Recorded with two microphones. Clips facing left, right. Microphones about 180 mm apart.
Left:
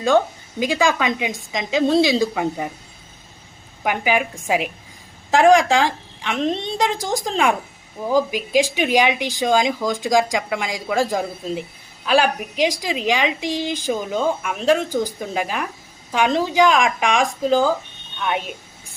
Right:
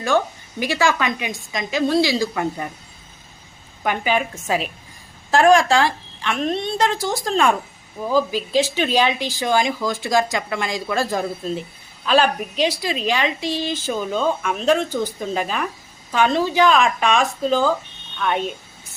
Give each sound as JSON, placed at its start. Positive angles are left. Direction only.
{"t": 0.6, "sound": "a woman's voice", "side_deg": 15}
{"t": 3.8, "sound": "a woman's voice", "side_deg": 10}